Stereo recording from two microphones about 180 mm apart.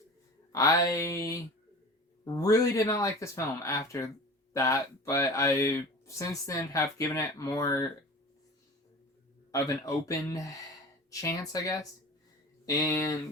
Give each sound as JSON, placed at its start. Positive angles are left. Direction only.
{"t": 0.5, "sound": "speech", "side_deg": 20}
{"t": 9.5, "sound": "speech", "side_deg": 20}